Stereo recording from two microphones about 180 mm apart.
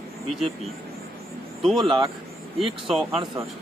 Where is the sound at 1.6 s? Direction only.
Centre (ahead or behind).